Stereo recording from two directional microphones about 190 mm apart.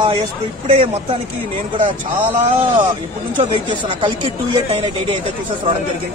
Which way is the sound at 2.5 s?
25° right (ahead or behind).